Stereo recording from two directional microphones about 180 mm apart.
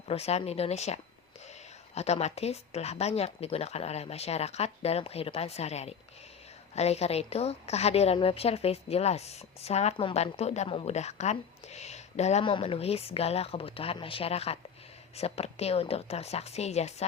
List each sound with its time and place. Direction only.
0.1 s a woman's voice: 35° left (ahead or behind)
2.0 s a woman's voice: 35° left (ahead or behind)